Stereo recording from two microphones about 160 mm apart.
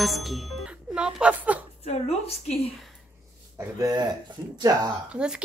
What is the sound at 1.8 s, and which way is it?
Speech, 40° left (ahead or behind).